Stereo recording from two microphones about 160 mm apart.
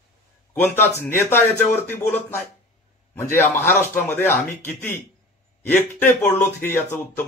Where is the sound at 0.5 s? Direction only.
15° left (ahead or behind).